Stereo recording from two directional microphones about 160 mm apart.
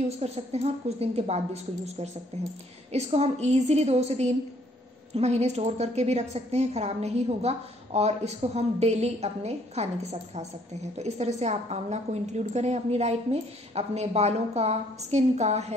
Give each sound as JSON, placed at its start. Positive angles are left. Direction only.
{"t": 0.2, "sound": "a woman's voice", "side_deg": -40}
{"t": 11.0, "sound": "a woman's voice", "side_deg": -45}